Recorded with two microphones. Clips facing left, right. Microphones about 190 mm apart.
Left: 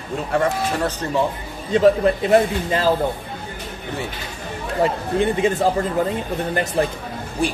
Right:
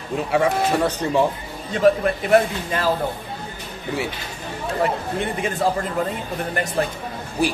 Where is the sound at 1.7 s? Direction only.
25° left (ahead or behind).